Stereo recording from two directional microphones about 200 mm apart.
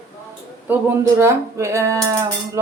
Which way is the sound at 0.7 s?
10° right (ahead or behind).